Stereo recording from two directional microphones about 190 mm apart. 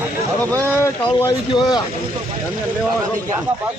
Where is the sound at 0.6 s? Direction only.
10° left (ahead or behind).